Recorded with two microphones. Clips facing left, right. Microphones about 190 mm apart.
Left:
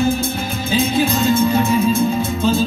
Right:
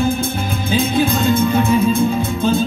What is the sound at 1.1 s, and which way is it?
Music, 55° right (ahead or behind).